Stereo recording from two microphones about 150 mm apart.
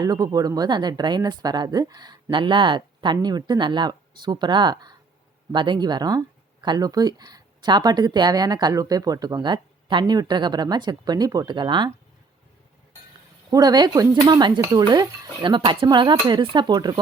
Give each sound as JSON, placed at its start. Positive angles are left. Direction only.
{"t": 0.0, "sound": "speech", "side_deg": -25}
{"t": 13.5, "sound": "speech", "side_deg": -25}